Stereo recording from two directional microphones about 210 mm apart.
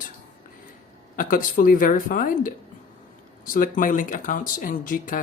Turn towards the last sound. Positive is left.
turn(degrees=40)  # may be behind; listen again after turning